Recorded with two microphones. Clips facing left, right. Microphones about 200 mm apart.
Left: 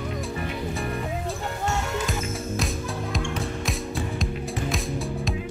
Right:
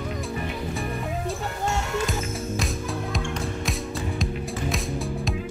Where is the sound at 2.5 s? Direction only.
Centre (ahead or behind).